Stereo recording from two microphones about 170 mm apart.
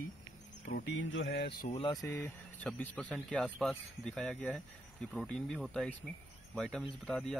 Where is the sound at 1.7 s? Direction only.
30° left (ahead or behind).